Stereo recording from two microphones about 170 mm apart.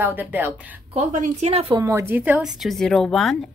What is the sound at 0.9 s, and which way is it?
Speech, 45° right (ahead or behind).